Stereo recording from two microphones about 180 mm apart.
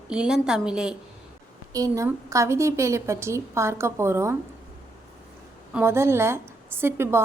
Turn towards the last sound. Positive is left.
turn(degrees=-15)  # may be behind; listen again after turning